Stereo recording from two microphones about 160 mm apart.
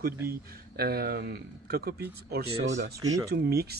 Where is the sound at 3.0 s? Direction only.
20° right (ahead or behind).